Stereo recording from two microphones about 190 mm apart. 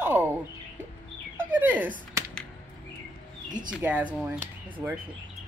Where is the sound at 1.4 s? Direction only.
10° right (ahead or behind).